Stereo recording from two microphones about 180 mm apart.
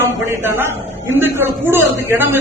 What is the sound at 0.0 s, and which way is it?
A man's voice, 15° right (ahead or behind).